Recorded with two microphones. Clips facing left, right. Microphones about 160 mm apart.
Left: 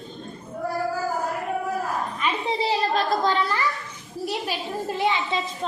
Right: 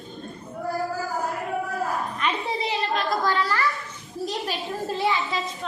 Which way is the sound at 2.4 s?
30° left (ahead or behind).